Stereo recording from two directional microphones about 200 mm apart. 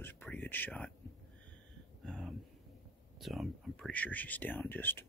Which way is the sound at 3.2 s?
Centre (ahead or behind).